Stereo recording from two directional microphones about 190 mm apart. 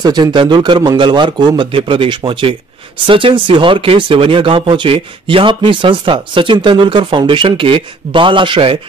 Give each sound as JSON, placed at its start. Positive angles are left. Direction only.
{"t": 0.0, "sound": "speech", "side_deg": -20}